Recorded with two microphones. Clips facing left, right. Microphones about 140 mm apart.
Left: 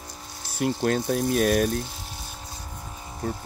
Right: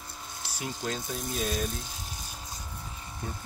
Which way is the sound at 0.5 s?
55° left (ahead or behind).